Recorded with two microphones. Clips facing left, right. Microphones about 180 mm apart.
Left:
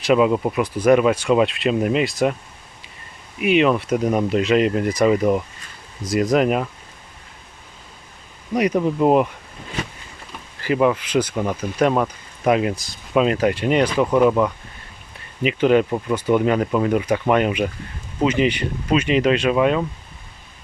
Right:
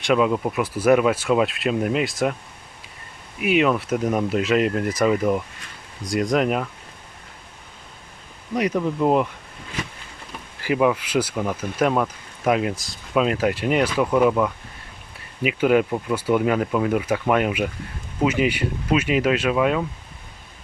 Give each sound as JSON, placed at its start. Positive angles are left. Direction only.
{"t": 0.0, "sound": "speech", "side_deg": 5}
{"t": 3.4, "sound": "speech", "side_deg": 0}
{"t": 8.5, "sound": "speech", "side_deg": 15}
{"t": 10.6, "sound": "speech", "side_deg": -5}